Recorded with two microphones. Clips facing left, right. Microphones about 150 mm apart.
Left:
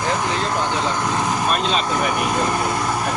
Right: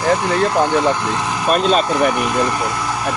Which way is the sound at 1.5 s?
45° right (ahead or behind).